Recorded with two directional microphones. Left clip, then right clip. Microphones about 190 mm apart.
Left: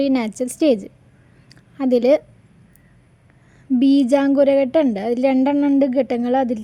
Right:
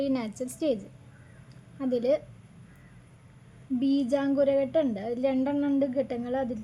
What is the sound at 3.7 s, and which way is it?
A woman's voice, 50° left (ahead or behind).